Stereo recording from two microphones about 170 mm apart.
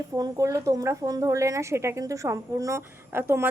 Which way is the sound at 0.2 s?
20° right (ahead or behind).